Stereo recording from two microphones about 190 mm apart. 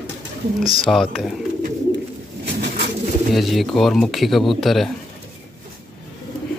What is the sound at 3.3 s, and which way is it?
Speech, centre (ahead or behind).